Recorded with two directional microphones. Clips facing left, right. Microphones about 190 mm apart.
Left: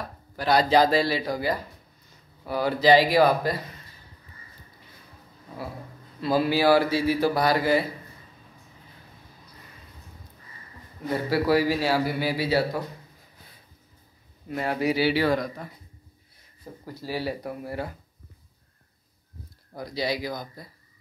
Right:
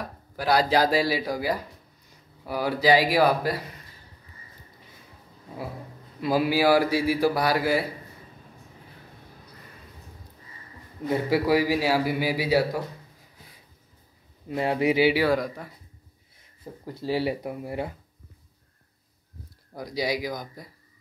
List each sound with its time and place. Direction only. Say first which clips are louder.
0.4 s a man's voice: left 2 dB; 10° right (ahead or behind)
6.2 s a man's voice: even; 10° right (ahead or behind)
11.1 s a man's voice: right 1 dB; 15° right (ahead or behind)
14.5 s a man's voice: right 2 dB; 20° right (ahead or behind)
16.8 s speech: right 4 dB; 20° right (ahead or behind)
19.8 s a man's voice: right 1 dB; 10° right (ahead or behind)